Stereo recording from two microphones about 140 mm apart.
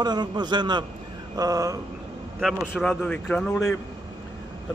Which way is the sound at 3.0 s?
10° left (ahead or behind).